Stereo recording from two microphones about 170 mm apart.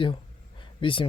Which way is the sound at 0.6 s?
30° left (ahead or behind).